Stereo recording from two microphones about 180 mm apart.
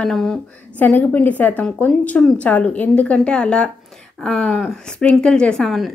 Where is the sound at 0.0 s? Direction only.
5° left (ahead or behind).